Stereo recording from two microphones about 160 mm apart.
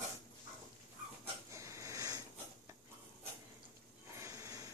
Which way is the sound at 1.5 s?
20° right (ahead or behind).